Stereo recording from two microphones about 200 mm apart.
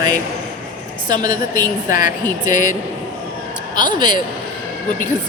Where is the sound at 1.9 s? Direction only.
40° left (ahead or behind).